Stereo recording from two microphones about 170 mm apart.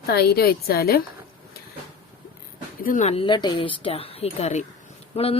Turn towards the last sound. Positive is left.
turn(degrees=35)  # may be behind; listen again after turning